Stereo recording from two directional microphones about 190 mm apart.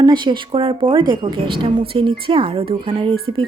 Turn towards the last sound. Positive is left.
turn(degrees=-30)  # may be behind; listen again after turning